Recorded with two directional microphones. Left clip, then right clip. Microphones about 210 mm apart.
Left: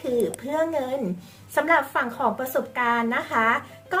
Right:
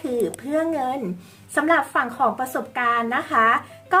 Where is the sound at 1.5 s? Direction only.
20° right (ahead or behind).